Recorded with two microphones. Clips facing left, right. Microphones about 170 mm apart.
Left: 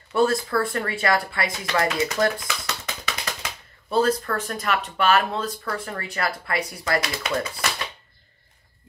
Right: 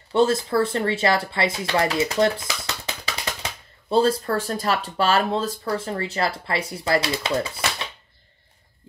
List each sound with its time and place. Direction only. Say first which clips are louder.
0.1 s speech: right 2 dB; 25° right (ahead or behind)